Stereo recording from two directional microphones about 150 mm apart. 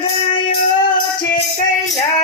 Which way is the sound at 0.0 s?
35° left (ahead or behind).